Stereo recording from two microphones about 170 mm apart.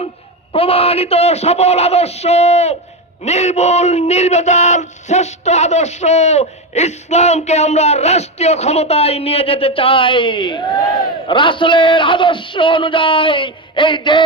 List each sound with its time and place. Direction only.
0.5 s speech: 35° left (ahead or behind)